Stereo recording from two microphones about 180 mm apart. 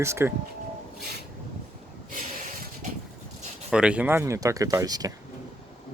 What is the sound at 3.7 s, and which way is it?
Speech, 5° right (ahead or behind).